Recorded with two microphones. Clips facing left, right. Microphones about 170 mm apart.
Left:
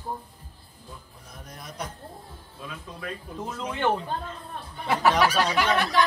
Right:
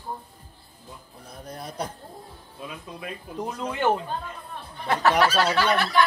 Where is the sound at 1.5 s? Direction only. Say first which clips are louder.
Right 5 dB; 30° right (ahead or behind).